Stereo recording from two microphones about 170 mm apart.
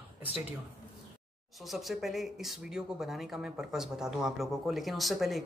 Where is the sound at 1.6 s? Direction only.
Centre (ahead or behind).